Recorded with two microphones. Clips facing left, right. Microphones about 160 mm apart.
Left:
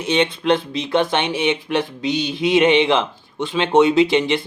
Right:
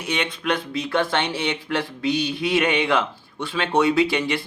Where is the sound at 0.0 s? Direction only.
25° left (ahead or behind).